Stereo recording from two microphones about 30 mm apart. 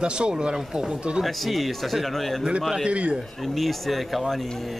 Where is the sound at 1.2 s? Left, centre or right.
Centre.